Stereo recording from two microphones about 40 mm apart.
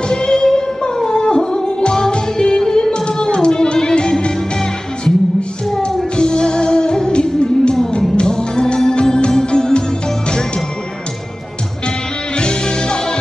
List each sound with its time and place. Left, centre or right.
0.1 s music: centre
6.1 s music: left
12.4 s music: left